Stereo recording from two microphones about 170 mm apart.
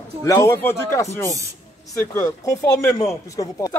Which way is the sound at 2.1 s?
20° left (ahead or behind).